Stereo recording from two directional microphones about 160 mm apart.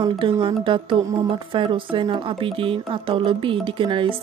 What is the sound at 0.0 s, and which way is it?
Speech, 30° right (ahead or behind).